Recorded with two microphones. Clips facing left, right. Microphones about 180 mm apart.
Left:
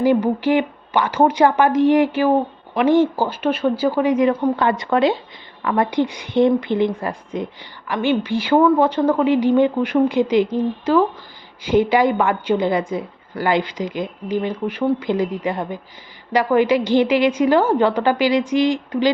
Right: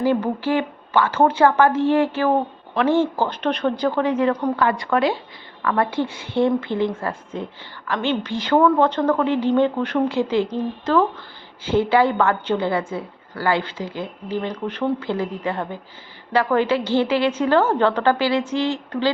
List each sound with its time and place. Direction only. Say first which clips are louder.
0.0 s a woman's voice: left 4 dB; 15° left (ahead or behind)
4.3 s a woman's voice: left 2 dB; 25° left (ahead or behind)